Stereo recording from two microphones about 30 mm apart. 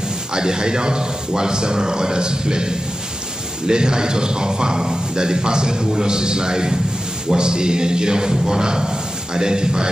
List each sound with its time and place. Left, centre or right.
0.3 s a man's voice: right